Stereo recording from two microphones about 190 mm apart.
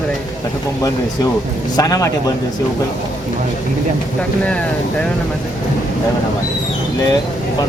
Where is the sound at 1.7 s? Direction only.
20° left (ahead or behind).